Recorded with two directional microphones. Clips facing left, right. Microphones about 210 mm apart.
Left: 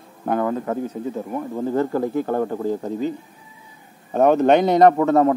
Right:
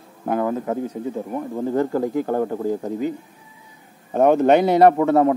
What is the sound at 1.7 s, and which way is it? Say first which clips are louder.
Speech: even; 15° right (ahead or behind).